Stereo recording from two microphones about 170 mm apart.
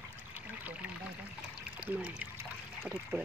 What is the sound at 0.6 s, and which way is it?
Pour, 10° right (ahead or behind).